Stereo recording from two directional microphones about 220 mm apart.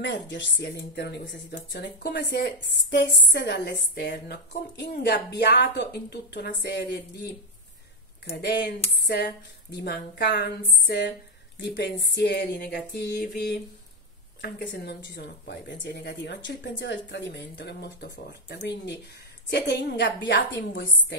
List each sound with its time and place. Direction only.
0.0 s a woman's voice: 50° left (ahead or behind)
8.3 s a woman's voice: 50° left (ahead or behind)
14.4 s a woman's voice: 50° left (ahead or behind)